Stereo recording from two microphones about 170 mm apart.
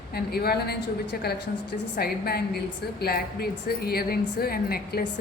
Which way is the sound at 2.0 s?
65° left (ahead or behind).